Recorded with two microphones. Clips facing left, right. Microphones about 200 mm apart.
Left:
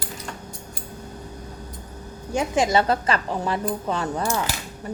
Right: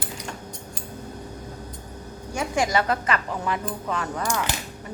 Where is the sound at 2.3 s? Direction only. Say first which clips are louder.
Left 3 dB; 20° left (ahead or behind).